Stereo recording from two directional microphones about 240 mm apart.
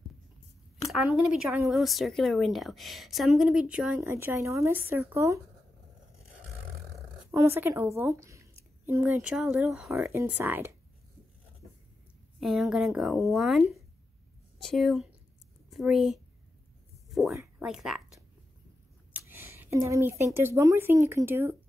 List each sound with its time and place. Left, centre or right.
0.9 s speech: centre
7.2 s a woman's voice: centre
12.4 s speech: centre